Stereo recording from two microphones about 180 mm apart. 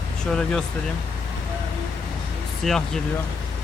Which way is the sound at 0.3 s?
5° left (ahead or behind).